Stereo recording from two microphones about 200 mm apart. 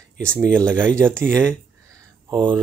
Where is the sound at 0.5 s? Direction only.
5° left (ahead or behind).